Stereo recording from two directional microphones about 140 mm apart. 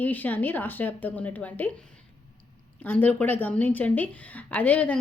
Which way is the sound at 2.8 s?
15° left (ahead or behind).